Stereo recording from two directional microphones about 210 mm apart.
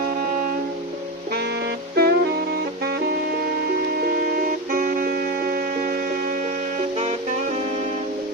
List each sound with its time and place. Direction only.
1.3 s music: 50° right (ahead or behind)
4.6 s music: 40° right (ahead or behind)